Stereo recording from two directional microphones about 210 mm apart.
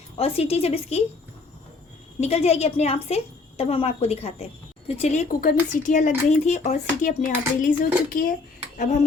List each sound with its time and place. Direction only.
0.2 s a woman's voice: 30° left (ahead or behind)
2.2 s a woman's voice: 30° left (ahead or behind)